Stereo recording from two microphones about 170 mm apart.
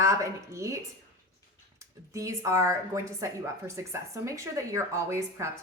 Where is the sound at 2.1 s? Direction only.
20° right (ahead or behind).